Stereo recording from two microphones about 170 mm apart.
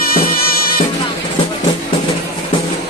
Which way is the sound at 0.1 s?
60° left (ahead or behind).